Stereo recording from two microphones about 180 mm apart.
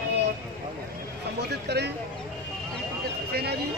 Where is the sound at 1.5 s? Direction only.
65° right (ahead or behind).